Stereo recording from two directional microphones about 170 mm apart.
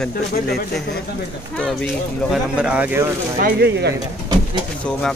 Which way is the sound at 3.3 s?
70° right (ahead or behind).